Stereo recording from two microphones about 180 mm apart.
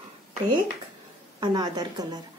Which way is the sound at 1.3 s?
25° right (ahead or behind).